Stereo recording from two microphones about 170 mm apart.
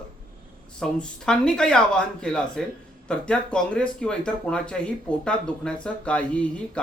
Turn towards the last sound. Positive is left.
turn(degrees=5)  # may be behind; listen again after turning